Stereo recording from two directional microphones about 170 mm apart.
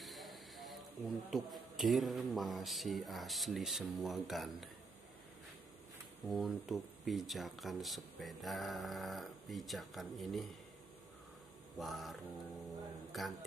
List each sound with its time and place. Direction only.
0.0 s speech: centre (ahead or behind)
6.2 s speech: centre (ahead or behind)
11.8 s speech: centre (ahead or behind)